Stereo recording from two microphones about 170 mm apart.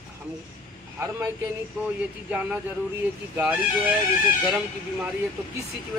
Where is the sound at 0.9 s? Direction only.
15° right (ahead or behind).